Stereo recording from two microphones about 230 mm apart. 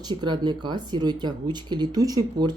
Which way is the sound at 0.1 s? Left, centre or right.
Centre.